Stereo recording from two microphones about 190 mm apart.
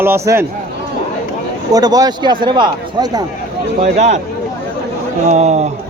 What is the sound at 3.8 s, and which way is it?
Speech, 35° right (ahead or behind).